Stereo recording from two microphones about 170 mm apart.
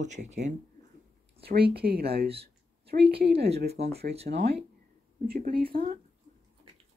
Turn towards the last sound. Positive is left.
turn(degrees=-60)  # may be behind; listen again after turning